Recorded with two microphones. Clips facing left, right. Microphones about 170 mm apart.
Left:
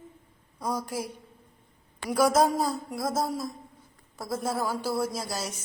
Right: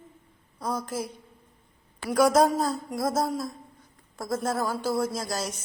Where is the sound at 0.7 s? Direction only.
15° left (ahead or behind).